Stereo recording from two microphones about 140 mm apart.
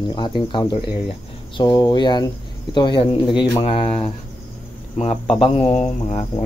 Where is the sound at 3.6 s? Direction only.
45° left (ahead or behind).